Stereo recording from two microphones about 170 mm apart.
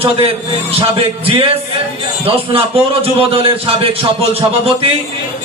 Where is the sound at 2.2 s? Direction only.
35° right (ahead or behind).